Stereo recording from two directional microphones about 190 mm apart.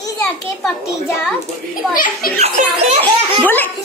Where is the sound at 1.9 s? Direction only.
50° left (ahead or behind).